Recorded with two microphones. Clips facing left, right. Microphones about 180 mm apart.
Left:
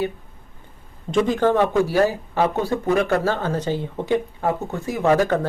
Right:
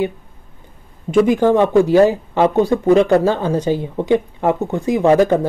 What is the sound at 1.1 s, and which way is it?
Speech, 10° right (ahead or behind).